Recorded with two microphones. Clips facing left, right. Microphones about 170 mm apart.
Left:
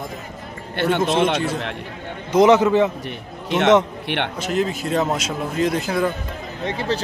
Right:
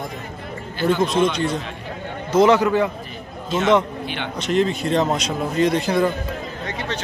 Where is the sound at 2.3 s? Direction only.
20° left (ahead or behind).